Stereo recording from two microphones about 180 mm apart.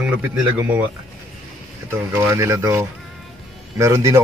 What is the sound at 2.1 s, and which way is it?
Speech, 15° right (ahead or behind).